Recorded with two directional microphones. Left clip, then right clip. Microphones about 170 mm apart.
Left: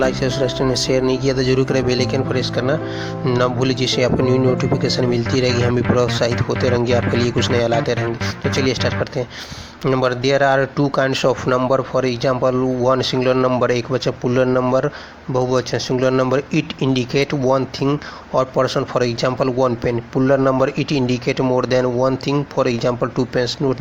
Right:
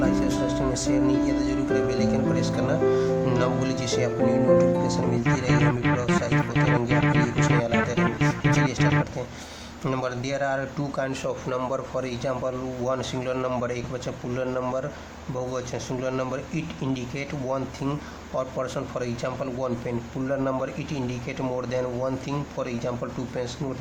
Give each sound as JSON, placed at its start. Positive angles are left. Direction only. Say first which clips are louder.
{"t": 0.0, "sound": "speech", "louder": "left 6 dB", "side_deg": 35}